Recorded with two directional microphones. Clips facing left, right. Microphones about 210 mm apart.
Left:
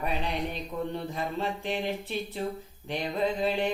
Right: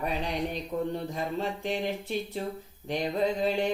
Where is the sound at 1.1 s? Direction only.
45° right (ahead or behind).